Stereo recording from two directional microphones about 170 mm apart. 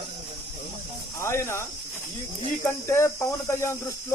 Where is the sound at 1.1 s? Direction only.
15° left (ahead or behind).